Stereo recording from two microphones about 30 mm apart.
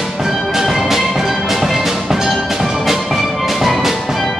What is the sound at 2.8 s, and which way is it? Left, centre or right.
Music, centre.